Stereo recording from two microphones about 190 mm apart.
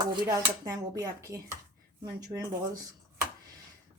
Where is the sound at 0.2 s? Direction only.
20° right (ahead or behind).